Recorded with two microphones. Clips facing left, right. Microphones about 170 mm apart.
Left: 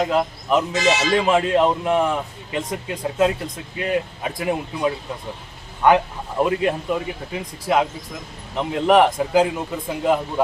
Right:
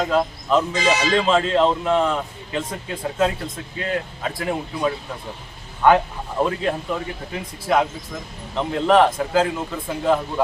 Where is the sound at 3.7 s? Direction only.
15° left (ahead or behind).